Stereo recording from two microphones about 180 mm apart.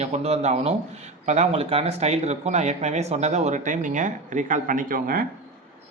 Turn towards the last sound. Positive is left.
turn(degrees=-55)  # may be behind; listen again after turning